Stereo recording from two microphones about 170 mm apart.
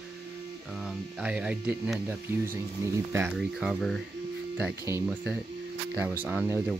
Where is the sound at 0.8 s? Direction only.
5° right (ahead or behind).